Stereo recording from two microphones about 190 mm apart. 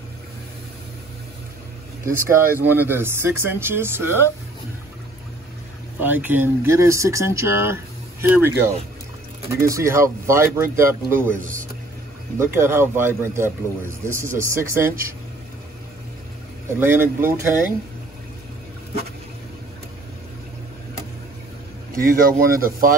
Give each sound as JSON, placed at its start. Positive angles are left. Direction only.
{"t": 2.1, "sound": "speech", "side_deg": -10}
{"t": 5.9, "sound": "speech", "side_deg": -10}
{"t": 12.4, "sound": "speech", "side_deg": -15}
{"t": 16.8, "sound": "speech", "side_deg": -10}
{"t": 21.9, "sound": "speech", "side_deg": -50}